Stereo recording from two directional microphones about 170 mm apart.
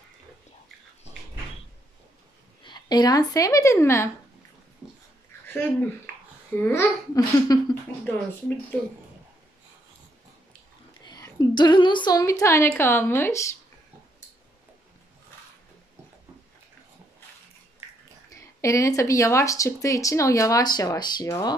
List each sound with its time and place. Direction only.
2.6 s speech: 25° left (ahead or behind)
5.5 s a child's voice: 10° left (ahead or behind)
7.2 s speech: 20° left (ahead or behind)
11.1 s speech: 20° left (ahead or behind)
18.3 s speech: 20° left (ahead or behind)